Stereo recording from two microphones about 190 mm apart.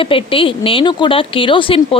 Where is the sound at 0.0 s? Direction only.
30° left (ahead or behind).